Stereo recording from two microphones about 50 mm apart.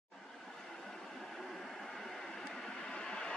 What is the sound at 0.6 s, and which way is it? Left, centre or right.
Train, centre.